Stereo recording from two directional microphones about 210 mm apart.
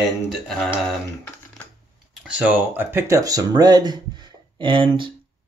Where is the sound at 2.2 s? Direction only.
5° right (ahead or behind).